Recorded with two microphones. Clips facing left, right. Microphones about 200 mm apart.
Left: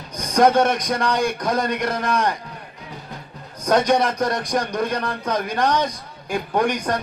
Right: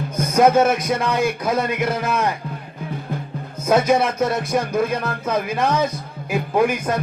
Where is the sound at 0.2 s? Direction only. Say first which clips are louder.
Right 1 dB; 5° right (ahead or behind).